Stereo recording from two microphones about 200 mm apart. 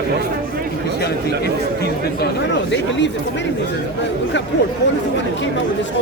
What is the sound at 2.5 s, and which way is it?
Speech, 65° left (ahead or behind).